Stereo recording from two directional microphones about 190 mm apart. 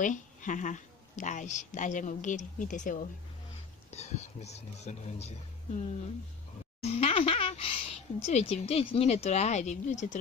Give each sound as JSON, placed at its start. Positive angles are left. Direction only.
{"t": 0.0, "sound": "a woman's voice", "side_deg": 40}
{"t": 6.8, "sound": "speech", "side_deg": 35}